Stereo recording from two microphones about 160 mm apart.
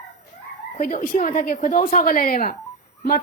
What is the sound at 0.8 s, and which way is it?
A woman's voice, 55° left (ahead or behind).